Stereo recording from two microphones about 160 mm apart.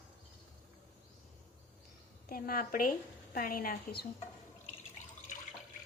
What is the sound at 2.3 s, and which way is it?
A woman's voice, 65° left (ahead or behind).